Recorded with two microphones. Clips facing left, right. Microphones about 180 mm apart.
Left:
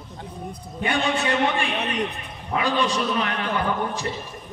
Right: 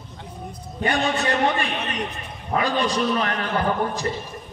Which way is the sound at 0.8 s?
40° right (ahead or behind).